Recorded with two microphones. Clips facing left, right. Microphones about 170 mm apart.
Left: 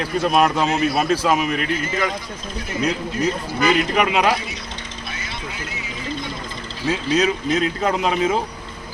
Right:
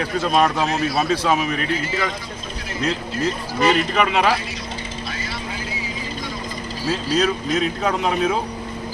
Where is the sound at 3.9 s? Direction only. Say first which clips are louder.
Even; 15° left (ahead or behind).